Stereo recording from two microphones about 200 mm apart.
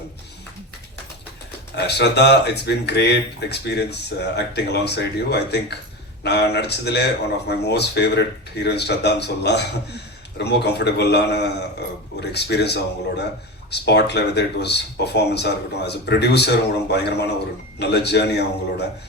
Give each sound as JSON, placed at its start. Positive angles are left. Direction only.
{"t": 1.7, "sound": "speech", "side_deg": 55}